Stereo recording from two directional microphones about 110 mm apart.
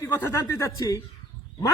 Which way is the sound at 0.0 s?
20° left (ahead or behind).